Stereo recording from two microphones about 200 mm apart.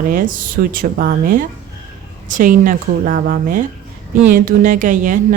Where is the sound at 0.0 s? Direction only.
45° right (ahead or behind).